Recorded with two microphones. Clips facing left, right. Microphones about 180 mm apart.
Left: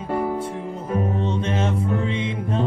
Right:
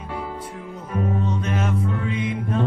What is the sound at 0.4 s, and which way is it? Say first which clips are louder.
Music: left 6 dB; 25° left (ahead or behind).